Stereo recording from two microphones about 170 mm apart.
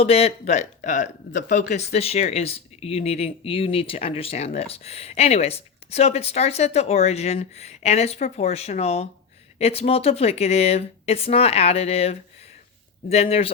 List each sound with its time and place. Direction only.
0.0 s speech: 35° left (ahead or behind)